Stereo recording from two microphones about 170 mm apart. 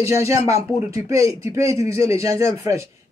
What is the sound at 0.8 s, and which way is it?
Speech, 20° right (ahead or behind).